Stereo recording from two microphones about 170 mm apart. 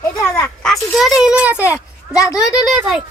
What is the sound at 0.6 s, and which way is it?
A child's voice, centre (ahead or behind).